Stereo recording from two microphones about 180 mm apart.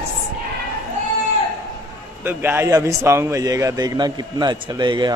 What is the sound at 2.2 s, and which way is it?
Speech, 10° right (ahead or behind).